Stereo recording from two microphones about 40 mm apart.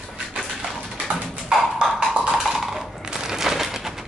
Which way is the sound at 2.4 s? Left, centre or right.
Centre.